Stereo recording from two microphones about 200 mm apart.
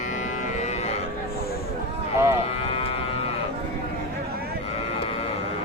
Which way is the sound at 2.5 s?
30° left (ahead or behind).